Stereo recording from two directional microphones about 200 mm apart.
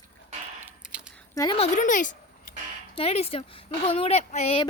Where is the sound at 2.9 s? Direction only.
30° left (ahead or behind).